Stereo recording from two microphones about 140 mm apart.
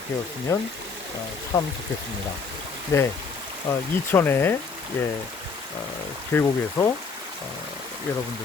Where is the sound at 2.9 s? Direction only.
20° left (ahead or behind).